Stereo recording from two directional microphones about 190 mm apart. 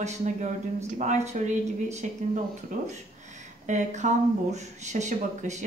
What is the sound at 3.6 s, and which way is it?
Speech, 40° right (ahead or behind).